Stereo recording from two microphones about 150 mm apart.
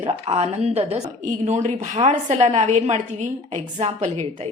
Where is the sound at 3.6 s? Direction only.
40° right (ahead or behind).